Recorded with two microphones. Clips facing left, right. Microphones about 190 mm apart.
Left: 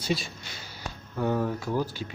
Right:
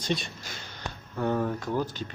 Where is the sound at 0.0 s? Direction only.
5° left (ahead or behind).